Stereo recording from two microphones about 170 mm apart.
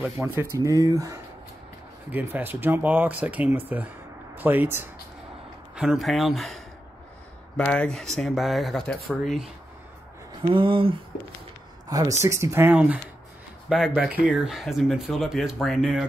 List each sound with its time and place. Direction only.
0.0 s speech: 15° right (ahead or behind)
5.8 s speech: centre (ahead or behind)
10.5 s a sound: 30° right (ahead or behind)
12.2 s speech: 15° right (ahead or behind); by 16.1 s centre (ahead or behind)